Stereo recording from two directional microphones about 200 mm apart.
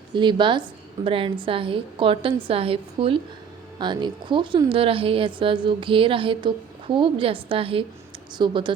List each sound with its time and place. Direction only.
0.1 s a woman's voice: 25° right (ahead or behind)